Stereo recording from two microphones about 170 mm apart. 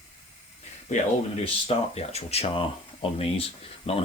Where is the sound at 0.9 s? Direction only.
45° left (ahead or behind).